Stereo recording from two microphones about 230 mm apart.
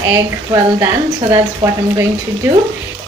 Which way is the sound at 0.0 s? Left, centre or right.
Centre.